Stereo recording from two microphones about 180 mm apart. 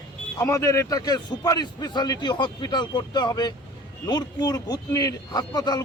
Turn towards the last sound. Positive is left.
turn(degrees=20)  # may be behind; listen again after turning